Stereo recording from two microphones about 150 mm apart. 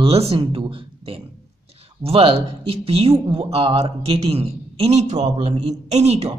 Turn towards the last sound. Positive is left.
turn(degrees=-45)  # may be behind; listen again after turning